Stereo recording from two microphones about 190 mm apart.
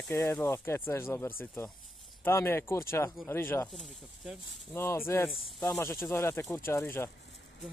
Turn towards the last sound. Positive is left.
turn(degrees=10)  # may be behind; listen again after turning